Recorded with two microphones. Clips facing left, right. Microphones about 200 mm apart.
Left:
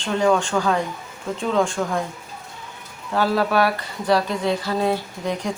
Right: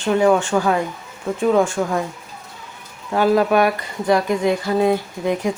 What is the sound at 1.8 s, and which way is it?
Speech, 15° right (ahead or behind).